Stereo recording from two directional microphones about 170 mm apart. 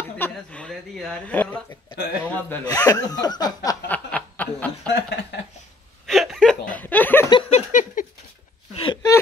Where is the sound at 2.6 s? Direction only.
20° left (ahead or behind).